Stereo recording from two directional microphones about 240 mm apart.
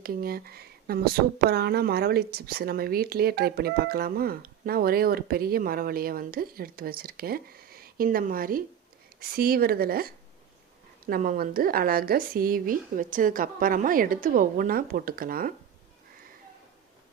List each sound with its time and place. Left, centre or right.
0.0 s speech: right